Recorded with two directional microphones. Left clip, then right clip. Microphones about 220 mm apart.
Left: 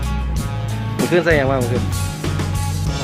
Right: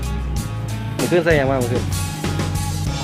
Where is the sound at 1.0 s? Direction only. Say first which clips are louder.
Left 1 dB; centre (ahead or behind).